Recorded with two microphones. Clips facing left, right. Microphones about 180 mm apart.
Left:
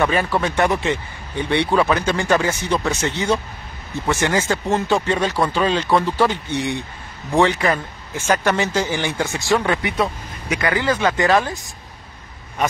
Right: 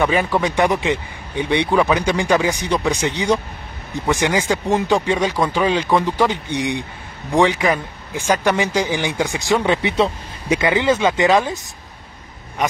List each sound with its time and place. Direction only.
0.0 s a man's voice: 15° right (ahead or behind)